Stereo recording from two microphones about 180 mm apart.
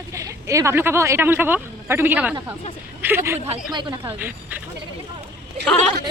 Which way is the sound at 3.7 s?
25° right (ahead or behind).